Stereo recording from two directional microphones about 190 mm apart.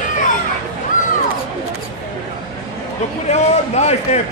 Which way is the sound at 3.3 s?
35° left (ahead or behind).